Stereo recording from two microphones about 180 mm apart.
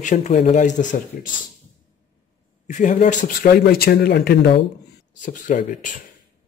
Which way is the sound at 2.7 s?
45° left (ahead or behind).